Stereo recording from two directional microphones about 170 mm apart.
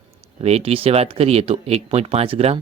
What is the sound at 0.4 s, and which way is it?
Speech, 35° right (ahead or behind).